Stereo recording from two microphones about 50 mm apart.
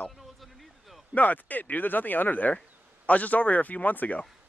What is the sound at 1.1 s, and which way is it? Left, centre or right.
Speech, left.